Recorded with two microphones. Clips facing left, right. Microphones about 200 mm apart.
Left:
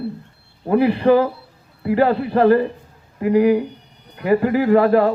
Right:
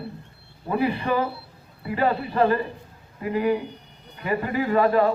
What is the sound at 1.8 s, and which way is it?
Speech, 65° left (ahead or behind).